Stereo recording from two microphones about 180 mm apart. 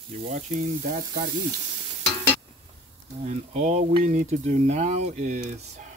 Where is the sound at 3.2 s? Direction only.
40° right (ahead or behind).